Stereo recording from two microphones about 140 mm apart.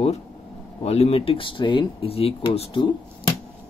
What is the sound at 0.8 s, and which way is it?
Speech, 45° left (ahead or behind).